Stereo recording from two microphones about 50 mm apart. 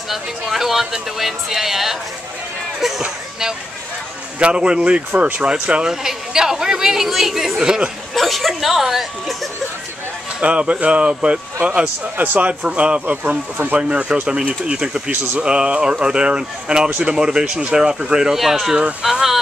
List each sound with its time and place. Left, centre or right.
0.1 s speech: centre
4.4 s speech: right
8.1 s speech: centre
10.4 s speech: right
13.1 s speech: right; by 15.0 s centre
15.0 s speech: right
15.4 s speech: centre